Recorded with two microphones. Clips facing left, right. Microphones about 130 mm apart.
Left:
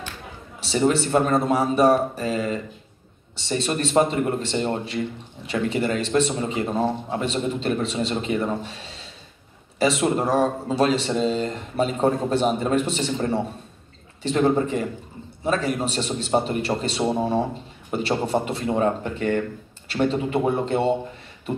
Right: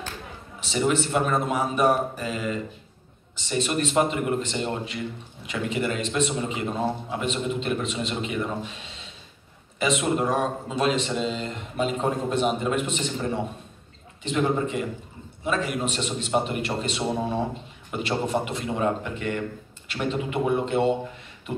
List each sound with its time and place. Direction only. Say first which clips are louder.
0.6 s a man's voice: left 3 dB; 30° left (ahead or behind)